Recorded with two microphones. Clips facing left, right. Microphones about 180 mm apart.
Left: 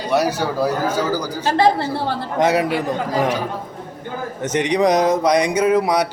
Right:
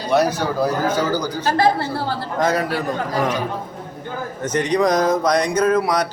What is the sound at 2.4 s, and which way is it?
Speech, 20° left (ahead or behind).